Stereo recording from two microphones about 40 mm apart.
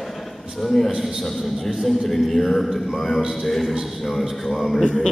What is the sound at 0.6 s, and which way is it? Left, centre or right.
Speech, centre.